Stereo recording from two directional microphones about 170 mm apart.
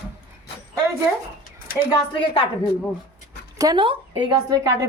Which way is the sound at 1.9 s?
30° left (ahead or behind).